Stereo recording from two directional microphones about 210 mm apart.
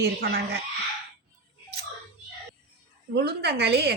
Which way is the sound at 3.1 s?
50° right (ahead or behind).